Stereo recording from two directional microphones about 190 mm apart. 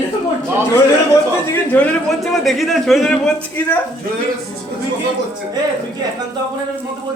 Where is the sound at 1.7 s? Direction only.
5° left (ahead or behind).